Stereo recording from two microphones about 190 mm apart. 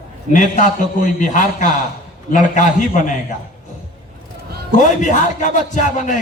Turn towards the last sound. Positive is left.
turn(degrees=40)  # may be behind; listen again after turning